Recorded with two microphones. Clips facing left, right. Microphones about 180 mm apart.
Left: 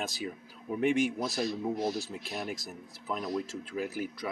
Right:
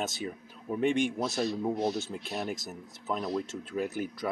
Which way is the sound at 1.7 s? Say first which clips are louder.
Right 2 dB; 30° right (ahead or behind).